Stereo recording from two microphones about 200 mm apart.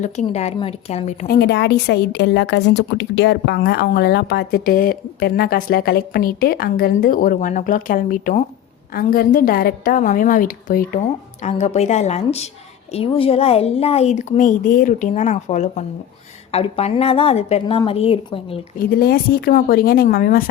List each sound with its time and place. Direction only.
0.0 s speech: 35° left (ahead or behind)
1.4 s a woman's voice: 55° left (ahead or behind); by 18.6 s 25° left (ahead or behind)
18.8 s a woman's voice: 50° left (ahead or behind)